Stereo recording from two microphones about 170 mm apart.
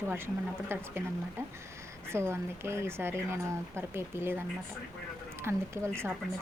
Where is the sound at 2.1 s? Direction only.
15° right (ahead or behind).